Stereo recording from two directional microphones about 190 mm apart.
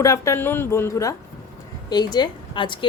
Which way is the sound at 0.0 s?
15° left (ahead or behind).